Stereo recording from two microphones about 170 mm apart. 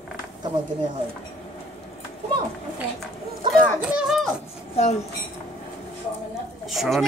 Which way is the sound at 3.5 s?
5° right (ahead or behind).